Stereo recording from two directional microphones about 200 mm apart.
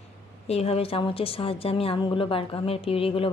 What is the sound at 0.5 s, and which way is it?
Speech, 30° left (ahead or behind).